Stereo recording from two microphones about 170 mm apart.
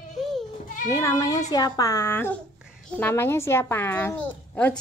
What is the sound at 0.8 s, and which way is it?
A child's voice, 20° left (ahead or behind).